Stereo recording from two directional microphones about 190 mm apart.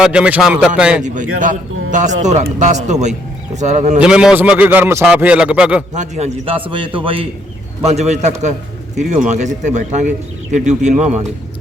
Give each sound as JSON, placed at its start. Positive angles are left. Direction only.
{"t": 0.0, "sound": "speech", "side_deg": -5}
{"t": 1.0, "sound": "speech", "side_deg": -40}
{"t": 4.0, "sound": "a man's voice", "side_deg": -5}
{"t": 5.9, "sound": "a man's voice", "side_deg": -40}